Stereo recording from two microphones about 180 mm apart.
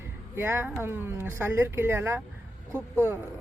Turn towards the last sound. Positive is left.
turn(degrees=-15)  # may be behind; listen again after turning